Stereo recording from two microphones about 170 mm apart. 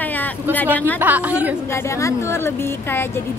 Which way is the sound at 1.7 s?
15° left (ahead or behind).